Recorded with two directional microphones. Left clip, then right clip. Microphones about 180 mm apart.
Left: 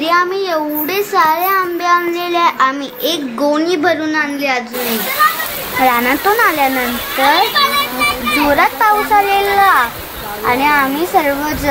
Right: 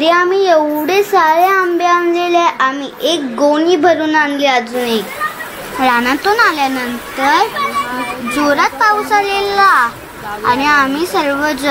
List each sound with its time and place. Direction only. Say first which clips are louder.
0.0 s a child's voice: right 3 dB; 10° right (ahead or behind)
4.2 s a child's voice: right 4 dB; 20° right (ahead or behind)
5.9 s a child's voice: right 1 dB; 25° right (ahead or behind)
8.5 s a child's voice: right 1 dB; 20° right (ahead or behind)